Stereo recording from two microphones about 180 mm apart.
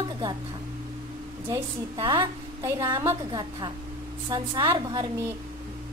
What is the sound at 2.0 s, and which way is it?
A woman's voice, 25° right (ahead or behind).